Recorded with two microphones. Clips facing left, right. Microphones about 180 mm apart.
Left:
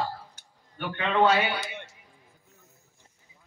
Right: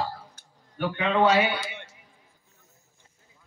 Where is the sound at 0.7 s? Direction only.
10° right (ahead or behind).